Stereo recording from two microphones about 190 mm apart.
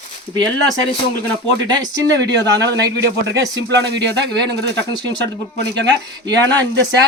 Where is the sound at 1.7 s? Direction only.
20° right (ahead or behind).